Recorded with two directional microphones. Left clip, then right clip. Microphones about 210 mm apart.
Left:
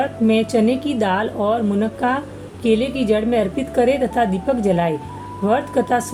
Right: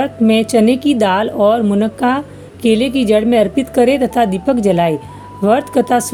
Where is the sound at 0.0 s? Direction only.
55° right (ahead or behind).